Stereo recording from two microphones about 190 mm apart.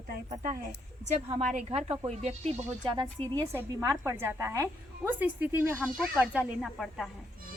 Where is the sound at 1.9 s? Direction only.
35° right (ahead or behind).